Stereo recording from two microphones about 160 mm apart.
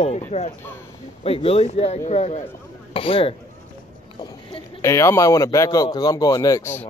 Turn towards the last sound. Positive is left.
turn(degrees=20)  # may be behind; listen again after turning